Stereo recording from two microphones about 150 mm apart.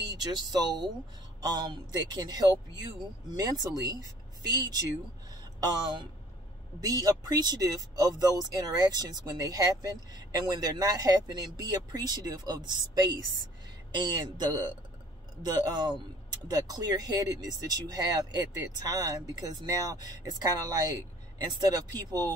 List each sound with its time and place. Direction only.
0.1 s speech: 25° right (ahead or behind)
5.6 s speech: 30° right (ahead or behind)